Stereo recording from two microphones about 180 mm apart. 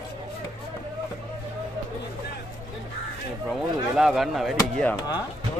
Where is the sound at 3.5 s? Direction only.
Centre (ahead or behind).